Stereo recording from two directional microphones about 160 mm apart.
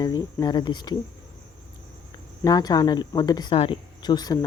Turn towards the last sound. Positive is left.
turn(degrees=25)  # may be behind; listen again after turning